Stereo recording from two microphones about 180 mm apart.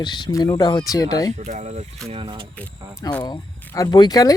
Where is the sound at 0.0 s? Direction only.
25° left (ahead or behind).